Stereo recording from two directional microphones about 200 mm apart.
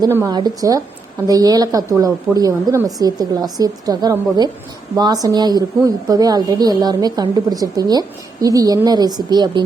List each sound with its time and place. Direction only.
0.0 s a woman's voice: 15° right (ahead or behind)